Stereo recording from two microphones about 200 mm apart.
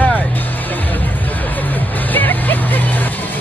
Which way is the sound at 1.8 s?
10° left (ahead or behind).